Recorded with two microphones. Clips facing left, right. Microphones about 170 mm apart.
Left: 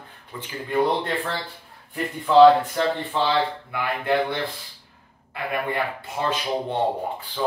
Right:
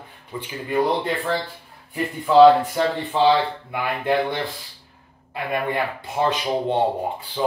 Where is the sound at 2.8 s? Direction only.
10° right (ahead or behind).